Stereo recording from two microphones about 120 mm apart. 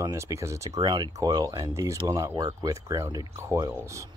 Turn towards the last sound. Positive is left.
turn(degrees=-30)  # may be behind; listen again after turning